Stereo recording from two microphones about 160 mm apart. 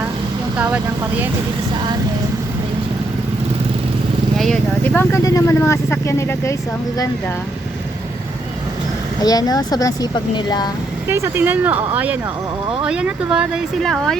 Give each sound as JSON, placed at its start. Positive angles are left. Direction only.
{"t": 0.5, "sound": "speech", "side_deg": -10}
{"t": 4.4, "sound": "speech", "side_deg": 5}
{"t": 9.2, "sound": "a woman's voice", "side_deg": 25}
{"t": 11.1, "sound": "speech", "side_deg": -15}